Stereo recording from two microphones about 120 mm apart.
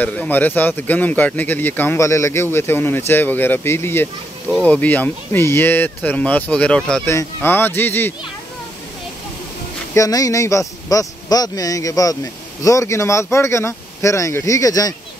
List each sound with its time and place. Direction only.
0.0 s speech: 10° left (ahead or behind)
7.1 s speech: 20° left (ahead or behind)
9.9 s speech: 30° left (ahead or behind)